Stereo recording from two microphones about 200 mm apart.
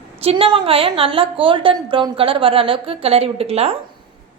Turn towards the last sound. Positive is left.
turn(degrees=-30)  # may be behind; listen again after turning